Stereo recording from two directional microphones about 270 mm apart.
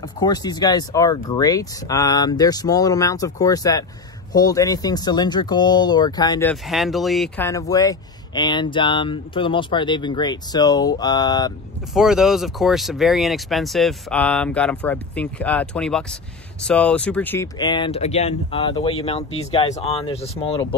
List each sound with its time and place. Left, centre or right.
0.2 s speech: centre
6.5 s speech: centre
11.9 s speech: centre; by 20.5 s left